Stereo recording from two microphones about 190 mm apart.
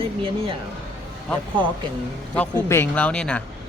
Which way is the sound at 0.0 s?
30° right (ahead or behind).